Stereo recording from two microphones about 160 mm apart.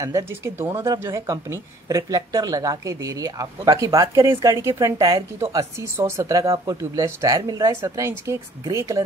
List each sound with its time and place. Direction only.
0.0 s speech: 20° right (ahead or behind)